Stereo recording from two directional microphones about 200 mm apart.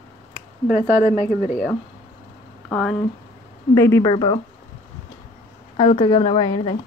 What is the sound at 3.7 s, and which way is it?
Speech, 15° left (ahead or behind).